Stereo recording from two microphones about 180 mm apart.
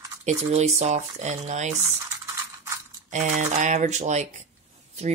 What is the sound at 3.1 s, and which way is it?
Speech, 40° right (ahead or behind).